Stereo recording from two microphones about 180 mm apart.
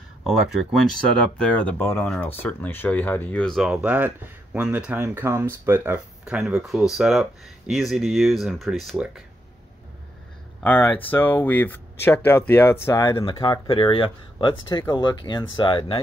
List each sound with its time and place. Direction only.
1.4 s speech: 5° left (ahead or behind)
10.6 s speech: 10° left (ahead or behind)
12.8 s speech: 20° left (ahead or behind)